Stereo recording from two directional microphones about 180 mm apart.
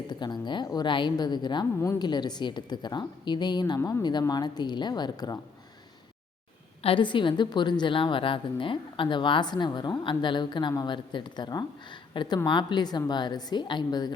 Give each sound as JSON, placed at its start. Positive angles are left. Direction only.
{"t": 0.1, "sound": "a woman's voice", "side_deg": 25}
{"t": 6.8, "sound": "a woman's voice", "side_deg": 30}